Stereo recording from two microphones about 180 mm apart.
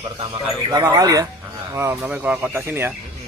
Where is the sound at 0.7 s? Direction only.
20° right (ahead or behind).